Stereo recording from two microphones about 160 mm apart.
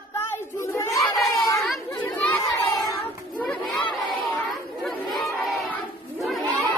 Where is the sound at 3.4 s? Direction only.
5° left (ahead or behind).